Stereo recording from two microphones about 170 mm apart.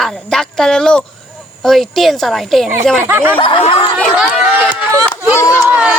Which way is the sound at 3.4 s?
30° left (ahead or behind).